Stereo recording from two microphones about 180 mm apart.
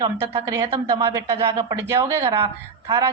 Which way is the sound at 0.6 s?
20° right (ahead or behind).